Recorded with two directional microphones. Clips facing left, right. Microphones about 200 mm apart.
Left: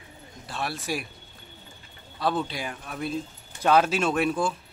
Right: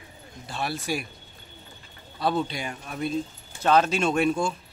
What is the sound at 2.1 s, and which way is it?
Speech, centre (ahead or behind).